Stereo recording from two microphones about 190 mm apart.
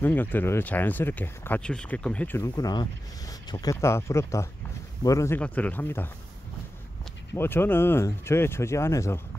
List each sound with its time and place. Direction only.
0.0 s speech: 10° left (ahead or behind)
7.3 s speech: 10° left (ahead or behind)